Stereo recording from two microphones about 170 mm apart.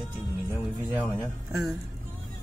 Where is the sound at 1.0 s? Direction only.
Centre (ahead or behind).